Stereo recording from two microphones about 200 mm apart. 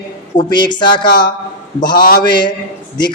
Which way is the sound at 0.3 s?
20° left (ahead or behind).